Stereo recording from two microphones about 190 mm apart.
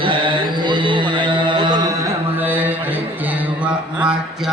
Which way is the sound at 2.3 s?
10° right (ahead or behind).